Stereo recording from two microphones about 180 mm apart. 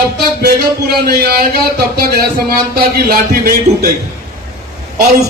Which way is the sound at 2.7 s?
55° right (ahead or behind).